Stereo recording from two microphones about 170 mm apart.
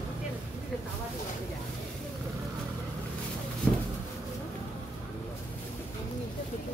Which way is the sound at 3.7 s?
10° left (ahead or behind).